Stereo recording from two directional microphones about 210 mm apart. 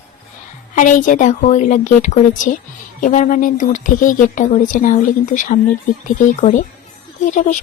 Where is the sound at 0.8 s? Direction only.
40° left (ahead or behind).